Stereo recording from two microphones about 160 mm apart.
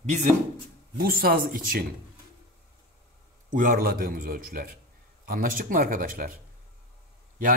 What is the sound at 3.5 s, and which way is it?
Speech, 60° right (ahead or behind).